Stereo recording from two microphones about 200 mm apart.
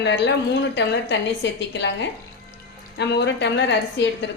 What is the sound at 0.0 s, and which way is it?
A woman's voice, 60° left (ahead or behind).